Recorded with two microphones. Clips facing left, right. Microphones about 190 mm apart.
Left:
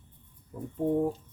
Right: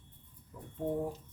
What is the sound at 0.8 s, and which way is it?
Speech, 35° left (ahead or behind).